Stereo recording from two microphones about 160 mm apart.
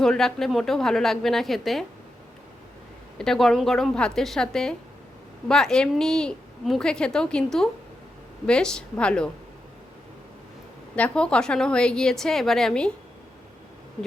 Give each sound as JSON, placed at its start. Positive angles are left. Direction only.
{"t": 0.0, "sound": "a woman's voice", "side_deg": 5}
{"t": 3.2, "sound": "a woman's voice", "side_deg": 5}
{"t": 10.9, "sound": "a woman's voice", "side_deg": 5}